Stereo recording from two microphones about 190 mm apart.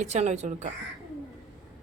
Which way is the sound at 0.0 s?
35° right (ahead or behind).